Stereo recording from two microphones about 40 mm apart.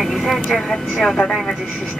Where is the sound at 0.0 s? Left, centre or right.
Centre.